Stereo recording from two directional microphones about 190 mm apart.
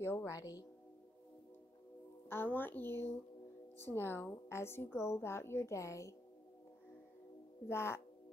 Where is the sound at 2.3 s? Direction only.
10° left (ahead or behind).